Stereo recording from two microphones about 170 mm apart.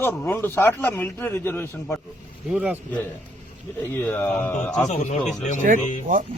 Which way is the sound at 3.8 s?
10° left (ahead or behind).